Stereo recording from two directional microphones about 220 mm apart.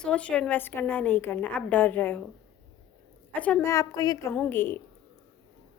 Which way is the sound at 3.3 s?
5° left (ahead or behind).